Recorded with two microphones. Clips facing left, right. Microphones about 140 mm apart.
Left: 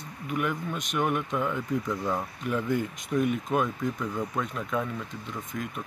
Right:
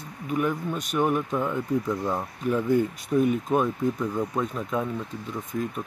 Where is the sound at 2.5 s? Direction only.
25° right (ahead or behind).